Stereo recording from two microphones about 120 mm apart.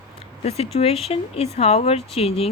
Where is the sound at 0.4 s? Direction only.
55° left (ahead or behind).